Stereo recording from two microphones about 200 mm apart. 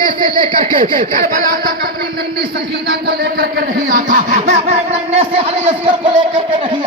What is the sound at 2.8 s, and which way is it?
Speech, 50° right (ahead or behind).